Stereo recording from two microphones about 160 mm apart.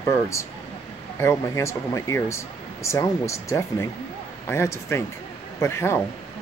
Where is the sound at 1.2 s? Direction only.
15° left (ahead or behind).